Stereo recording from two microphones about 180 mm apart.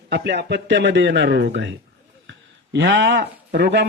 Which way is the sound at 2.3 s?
85° right.